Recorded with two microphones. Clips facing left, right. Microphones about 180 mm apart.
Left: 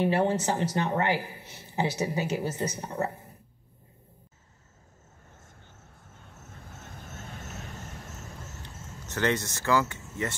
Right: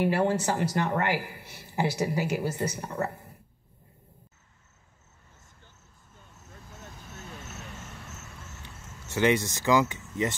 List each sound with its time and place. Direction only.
0.0 s speech: 20° left (ahead or behind)
5.9 s vehicle: 65° left (ahead or behind); by 8.5 s 40° left (ahead or behind)
9.1 s speech: 15° right (ahead or behind)